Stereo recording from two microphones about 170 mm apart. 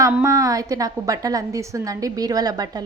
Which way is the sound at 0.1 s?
15° right (ahead or behind).